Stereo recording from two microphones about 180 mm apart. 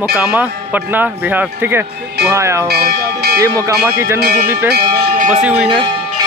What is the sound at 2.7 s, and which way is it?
Speech, 60° right (ahead or behind).